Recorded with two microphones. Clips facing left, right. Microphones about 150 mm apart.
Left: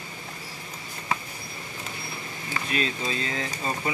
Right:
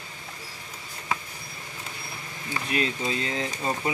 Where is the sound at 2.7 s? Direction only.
20° right (ahead or behind).